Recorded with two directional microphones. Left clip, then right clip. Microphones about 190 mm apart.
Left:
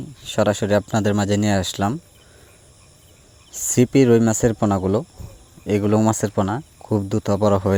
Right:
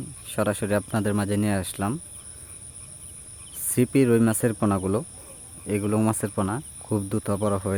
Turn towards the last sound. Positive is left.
turn(degrees=40)  # may be behind; listen again after turning